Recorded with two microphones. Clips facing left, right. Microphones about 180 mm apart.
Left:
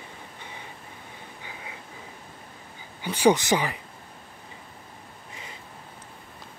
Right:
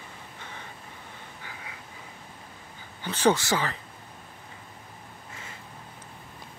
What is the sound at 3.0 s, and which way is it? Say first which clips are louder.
Speech: left 3 dB; 10° left (ahead or behind).